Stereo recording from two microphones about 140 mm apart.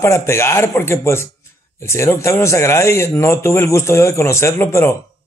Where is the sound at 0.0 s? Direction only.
20° left (ahead or behind).